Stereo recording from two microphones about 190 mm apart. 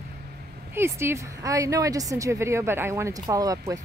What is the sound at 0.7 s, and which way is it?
A woman's voice, 15° right (ahead or behind).